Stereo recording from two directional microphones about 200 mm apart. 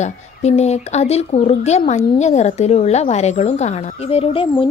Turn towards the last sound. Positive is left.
turn(degrees=25)  # may be behind; listen again after turning